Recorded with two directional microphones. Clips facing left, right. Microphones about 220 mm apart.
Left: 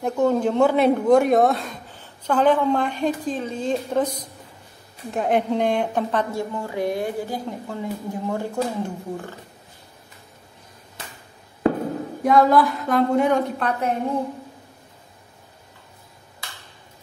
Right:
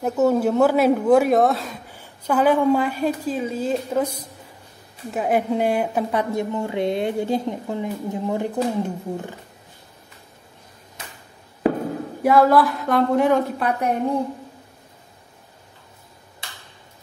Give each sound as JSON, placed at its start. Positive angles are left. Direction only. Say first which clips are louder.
{"t": 0.0, "sound": "a woman's voice", "louder": "right 1 dB", "side_deg": -5}
{"t": 6.3, "sound": "a woman's voice", "louder": "right 3 dB", "side_deg": -20}
{"t": 12.2, "sound": "a woman's voice", "louder": "right 1 dB", "side_deg": -5}